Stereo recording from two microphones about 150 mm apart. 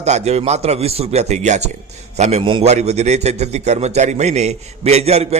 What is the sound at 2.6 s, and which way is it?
A man's voice, 45° right (ahead or behind).